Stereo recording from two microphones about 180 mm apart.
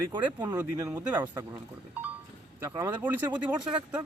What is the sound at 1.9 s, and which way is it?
Goat, 10° right (ahead or behind).